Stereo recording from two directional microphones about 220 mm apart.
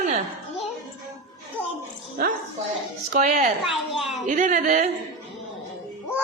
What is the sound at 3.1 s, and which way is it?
Speech, 40° right (ahead or behind).